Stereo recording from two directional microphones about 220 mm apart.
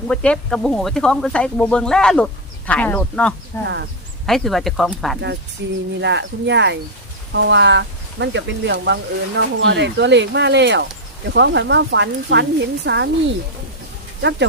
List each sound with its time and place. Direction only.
0.1 s speech: 5° left (ahead or behind)
4.3 s speech: centre (ahead or behind)
5.6 s speech: 55° right (ahead or behind)